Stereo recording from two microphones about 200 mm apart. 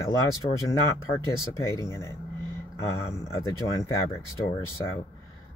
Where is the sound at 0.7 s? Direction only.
15° left (ahead or behind).